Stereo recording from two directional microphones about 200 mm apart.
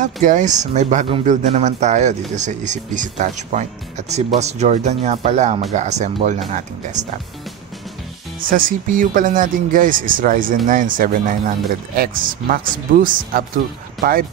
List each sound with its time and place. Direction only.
0.0 s speech: 40° right (ahead or behind)
8.5 s speech: 45° right (ahead or behind)